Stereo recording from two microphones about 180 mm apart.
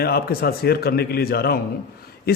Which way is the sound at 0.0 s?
60° left (ahead or behind).